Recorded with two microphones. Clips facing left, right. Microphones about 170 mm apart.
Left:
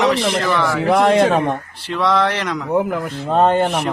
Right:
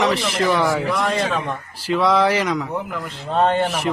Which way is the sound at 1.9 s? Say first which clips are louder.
Right 1 dB; 5° right (ahead or behind).